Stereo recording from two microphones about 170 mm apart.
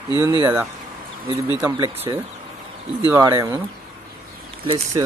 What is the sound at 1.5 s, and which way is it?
Speech, 20° right (ahead or behind).